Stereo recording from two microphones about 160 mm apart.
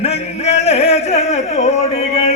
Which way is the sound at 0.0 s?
40° left (ahead or behind).